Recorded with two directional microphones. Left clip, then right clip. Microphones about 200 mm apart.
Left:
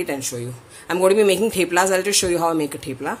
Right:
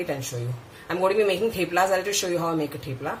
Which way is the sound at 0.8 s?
55° left (ahead or behind).